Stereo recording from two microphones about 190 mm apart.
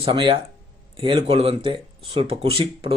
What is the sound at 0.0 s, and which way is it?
Speech, 25° right (ahead or behind).